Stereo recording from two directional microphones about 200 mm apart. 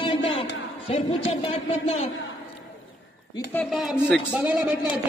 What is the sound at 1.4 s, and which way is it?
Speech, 30° left (ahead or behind).